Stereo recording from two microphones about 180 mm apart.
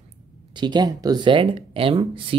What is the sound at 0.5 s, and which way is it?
Speech, 25° right (ahead or behind).